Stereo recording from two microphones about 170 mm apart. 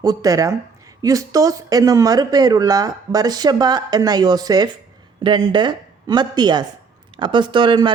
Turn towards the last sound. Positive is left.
turn(degrees=-30)  # may be behind; listen again after turning